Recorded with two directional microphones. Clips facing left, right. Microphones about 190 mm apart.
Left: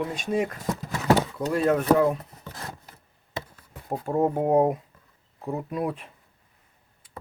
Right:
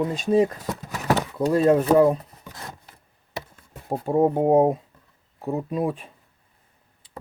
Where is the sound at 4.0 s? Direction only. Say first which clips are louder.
Right 4 dB; 15° right (ahead or behind).